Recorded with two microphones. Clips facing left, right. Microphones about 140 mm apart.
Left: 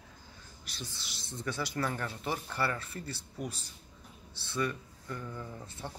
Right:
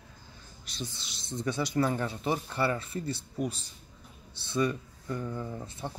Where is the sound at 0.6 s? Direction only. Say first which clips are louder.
Right 5 dB; 20° right (ahead or behind).